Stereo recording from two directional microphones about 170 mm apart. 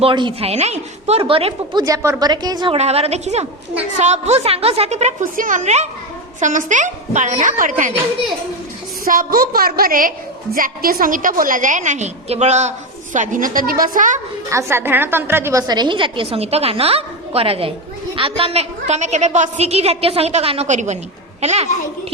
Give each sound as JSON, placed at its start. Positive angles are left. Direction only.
{"t": 0.0, "sound": "a woman's voice", "side_deg": -30}
{"t": 1.8, "sound": "a woman's voice", "side_deg": -20}
{"t": 2.7, "sound": "a woman's voice", "side_deg": -35}
{"t": 9.0, "sound": "a woman's voice", "side_deg": -55}
{"t": 14.5, "sound": "a woman's voice", "side_deg": -15}